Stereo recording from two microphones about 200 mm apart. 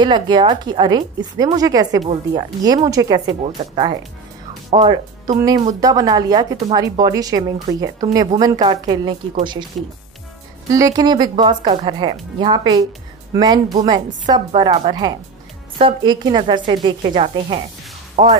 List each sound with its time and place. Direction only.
0.0 s a woman's voice: 25° right (ahead or behind)
5.8 s a woman's voice: 20° right (ahead or behind)
10.7 s a woman's voice: 15° right (ahead or behind)